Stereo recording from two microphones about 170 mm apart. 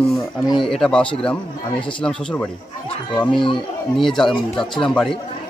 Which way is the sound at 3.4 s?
30° left (ahead or behind).